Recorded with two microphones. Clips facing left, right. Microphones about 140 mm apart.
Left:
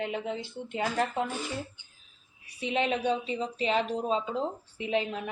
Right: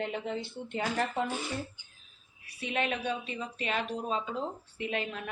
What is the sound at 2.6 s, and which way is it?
Speech, 20° left (ahead or behind).